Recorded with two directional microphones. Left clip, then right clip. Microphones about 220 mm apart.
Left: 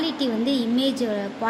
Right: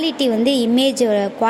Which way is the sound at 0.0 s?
35° right (ahead or behind).